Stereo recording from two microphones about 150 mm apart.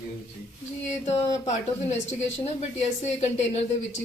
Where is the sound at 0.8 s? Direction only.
50° left (ahead or behind).